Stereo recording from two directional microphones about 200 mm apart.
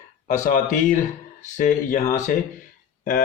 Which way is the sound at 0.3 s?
40° left (ahead or behind).